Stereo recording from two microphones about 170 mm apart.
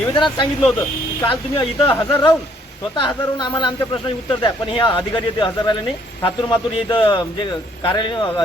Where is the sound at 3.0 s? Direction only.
25° left (ahead or behind).